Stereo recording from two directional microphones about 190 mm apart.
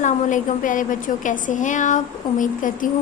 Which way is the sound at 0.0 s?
40° left (ahead or behind).